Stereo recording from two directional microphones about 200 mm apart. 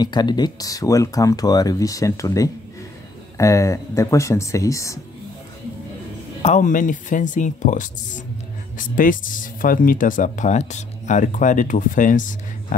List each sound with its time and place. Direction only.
0.0 s speech: 20° left (ahead or behind)
6.4 s speech: 40° left (ahead or behind)